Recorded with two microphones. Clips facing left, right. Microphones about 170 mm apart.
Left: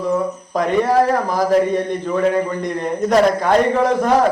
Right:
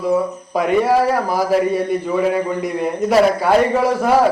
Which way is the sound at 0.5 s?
10° right (ahead or behind).